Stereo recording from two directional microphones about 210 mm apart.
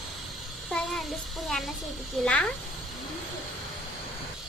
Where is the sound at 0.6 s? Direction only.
Centre (ahead or behind).